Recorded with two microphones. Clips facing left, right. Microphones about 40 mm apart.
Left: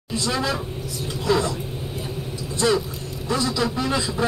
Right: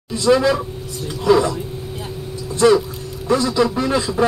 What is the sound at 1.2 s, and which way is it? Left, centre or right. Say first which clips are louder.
Speech: right 7 dB; right.